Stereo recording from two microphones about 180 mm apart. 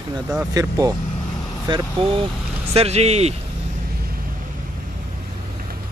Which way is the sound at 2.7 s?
35° right (ahead or behind).